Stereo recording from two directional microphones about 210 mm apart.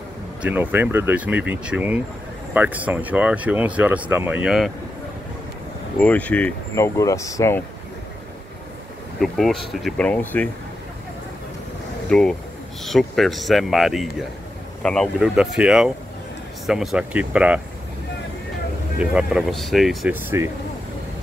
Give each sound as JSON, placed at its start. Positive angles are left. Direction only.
{"t": 0.4, "sound": "speech", "side_deg": -10}
{"t": 5.9, "sound": "speech", "side_deg": 5}
{"t": 9.2, "sound": "speech", "side_deg": 0}
{"t": 12.1, "sound": "speech", "side_deg": 5}
{"t": 18.9, "sound": "speech", "side_deg": -5}